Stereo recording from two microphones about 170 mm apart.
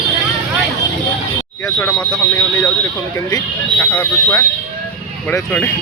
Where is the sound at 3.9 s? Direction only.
10° left (ahead or behind).